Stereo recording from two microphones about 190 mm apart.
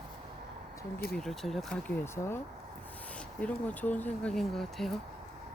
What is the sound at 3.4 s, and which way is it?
Speech, 10° left (ahead or behind).